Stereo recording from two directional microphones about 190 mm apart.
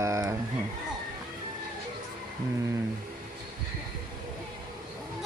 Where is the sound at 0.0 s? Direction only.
15° right (ahead or behind).